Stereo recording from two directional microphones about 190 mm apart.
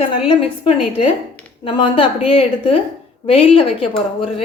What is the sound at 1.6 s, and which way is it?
A woman's voice, 25° left (ahead or behind).